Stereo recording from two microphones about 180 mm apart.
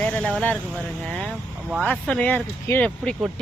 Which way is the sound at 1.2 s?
5° right (ahead or behind).